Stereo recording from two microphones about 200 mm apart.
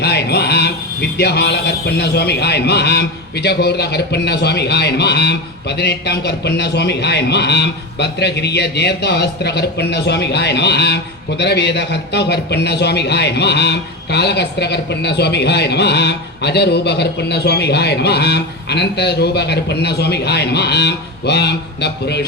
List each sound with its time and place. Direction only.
0.0 s speech: 55° left (ahead or behind)